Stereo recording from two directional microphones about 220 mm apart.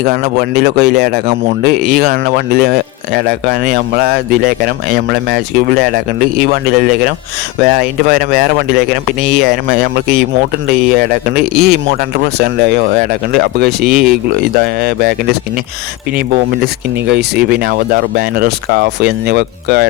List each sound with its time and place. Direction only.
0.0 s speech: 45° right (ahead or behind)
17.1 s speech: 50° right (ahead or behind)